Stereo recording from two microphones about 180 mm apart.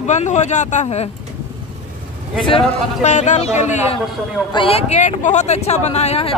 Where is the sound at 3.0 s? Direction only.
40° left (ahead or behind).